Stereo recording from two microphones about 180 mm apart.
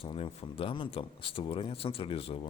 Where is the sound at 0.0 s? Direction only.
30° left (ahead or behind).